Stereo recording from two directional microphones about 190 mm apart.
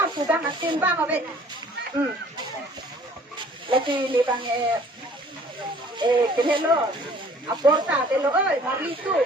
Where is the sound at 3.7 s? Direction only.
25° right (ahead or behind).